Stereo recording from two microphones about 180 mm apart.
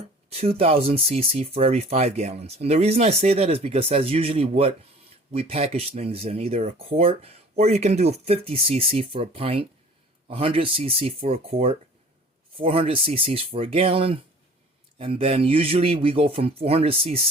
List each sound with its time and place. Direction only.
0.3 s speech: 35° right (ahead or behind)